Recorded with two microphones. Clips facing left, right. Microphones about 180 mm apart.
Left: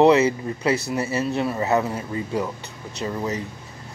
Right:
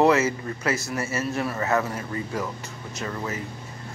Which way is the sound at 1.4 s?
20° left (ahead or behind).